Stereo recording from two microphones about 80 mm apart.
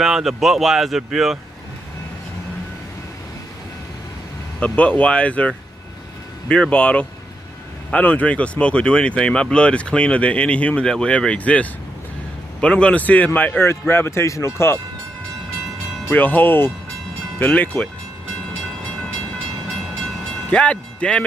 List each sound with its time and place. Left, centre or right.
0.0 s speech: centre
4.6 s speech: centre
6.5 s speech: centre; by 14.8 s left
16.1 s speech: left
20.4 s speech: centre